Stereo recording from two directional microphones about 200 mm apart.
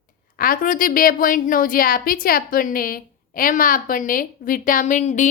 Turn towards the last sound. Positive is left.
turn(degrees=40)  # may be behind; listen again after turning